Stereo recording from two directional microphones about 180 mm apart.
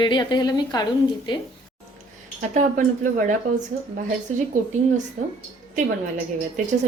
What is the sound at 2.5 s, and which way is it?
Speech, 45° right (ahead or behind).